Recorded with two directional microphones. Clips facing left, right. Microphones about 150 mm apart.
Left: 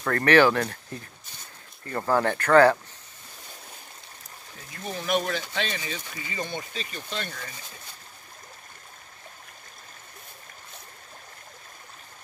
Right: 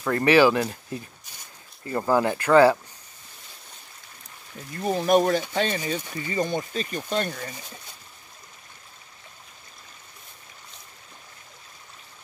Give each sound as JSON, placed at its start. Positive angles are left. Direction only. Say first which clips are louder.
{"t": 0.0, "sound": "speech", "louder": "right 1 dB", "side_deg": -10}
{"t": 1.9, "sound": "speech", "louder": "right 2 dB", "side_deg": -15}
{"t": 4.8, "sound": "speech", "louder": "right 8 dB", "side_deg": -40}